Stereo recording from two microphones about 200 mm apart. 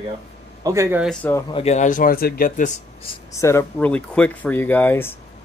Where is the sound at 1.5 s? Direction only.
30° left (ahead or behind).